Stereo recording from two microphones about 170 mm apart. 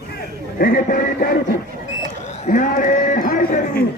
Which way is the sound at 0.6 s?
55° left (ahead or behind).